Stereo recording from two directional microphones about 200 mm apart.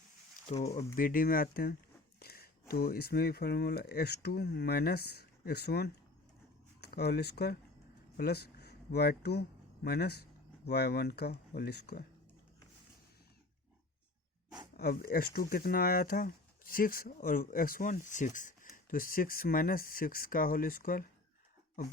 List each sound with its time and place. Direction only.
0.5 s speech: 35° left (ahead or behind); by 12.0 s 55° left (ahead or behind)
14.8 s speech: 50° left (ahead or behind)